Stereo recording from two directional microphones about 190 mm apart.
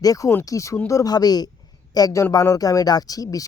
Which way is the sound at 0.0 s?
20° left (ahead or behind).